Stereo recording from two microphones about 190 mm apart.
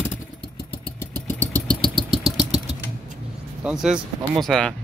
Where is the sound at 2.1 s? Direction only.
Centre (ahead or behind).